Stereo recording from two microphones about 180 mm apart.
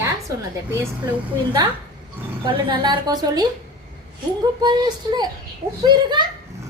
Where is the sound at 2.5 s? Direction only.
25° right (ahead or behind).